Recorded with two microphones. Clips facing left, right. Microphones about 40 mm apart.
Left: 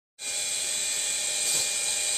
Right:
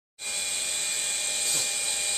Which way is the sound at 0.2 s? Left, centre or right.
Centre.